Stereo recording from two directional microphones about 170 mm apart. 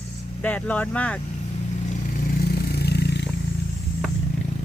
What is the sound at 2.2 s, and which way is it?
Vehicle, 65° left (ahead or behind).